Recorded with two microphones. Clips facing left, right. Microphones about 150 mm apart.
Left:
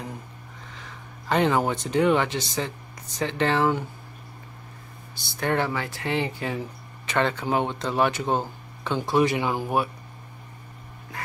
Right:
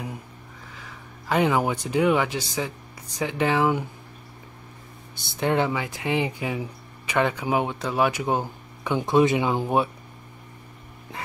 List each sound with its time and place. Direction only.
0.7 s speech: 5° right (ahead or behind)
5.1 s speech: 15° right (ahead or behind)